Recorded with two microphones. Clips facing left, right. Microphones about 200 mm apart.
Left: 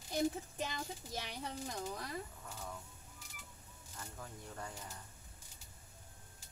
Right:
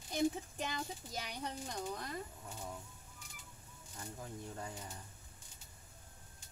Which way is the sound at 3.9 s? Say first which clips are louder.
Right 3 dB; 20° right (ahead or behind).